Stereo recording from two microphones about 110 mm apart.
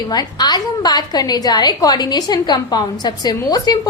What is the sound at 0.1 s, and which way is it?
A woman's voice, 40° left (ahead or behind).